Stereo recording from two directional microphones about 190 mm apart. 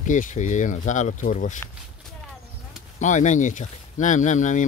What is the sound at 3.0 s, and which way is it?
Speech, 40° left (ahead or behind).